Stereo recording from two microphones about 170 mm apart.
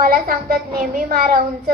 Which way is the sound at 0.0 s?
60° right (ahead or behind).